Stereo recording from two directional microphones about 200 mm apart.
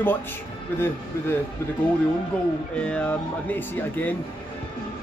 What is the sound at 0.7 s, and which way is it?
Speech, 10° left (ahead or behind).